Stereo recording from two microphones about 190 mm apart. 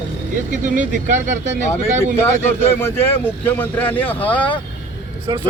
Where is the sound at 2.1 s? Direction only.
10° left (ahead or behind).